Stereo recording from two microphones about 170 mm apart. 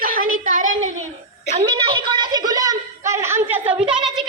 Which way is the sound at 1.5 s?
30° right (ahead or behind).